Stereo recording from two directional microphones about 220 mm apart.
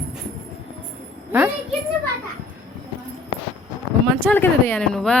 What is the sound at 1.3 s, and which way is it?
Speech, 5° right (ahead or behind).